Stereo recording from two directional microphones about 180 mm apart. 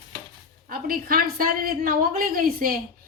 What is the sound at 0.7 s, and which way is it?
A woman's voice, 55° right (ahead or behind).